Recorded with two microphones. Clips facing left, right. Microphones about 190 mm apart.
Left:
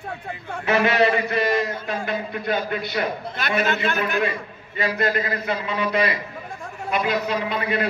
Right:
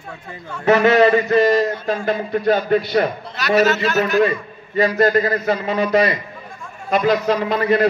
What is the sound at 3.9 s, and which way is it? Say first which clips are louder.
A man's voice: right 7 dB; 40° right (ahead or behind).